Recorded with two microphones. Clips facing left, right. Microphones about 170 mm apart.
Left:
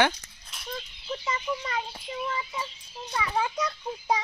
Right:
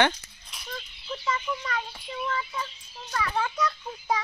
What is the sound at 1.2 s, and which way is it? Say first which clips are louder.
Speech: right 2 dB; 20° left (ahead or behind).